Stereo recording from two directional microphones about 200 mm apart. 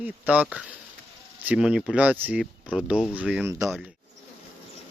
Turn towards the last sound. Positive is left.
turn(degrees=0)  # may be behind; listen again after turning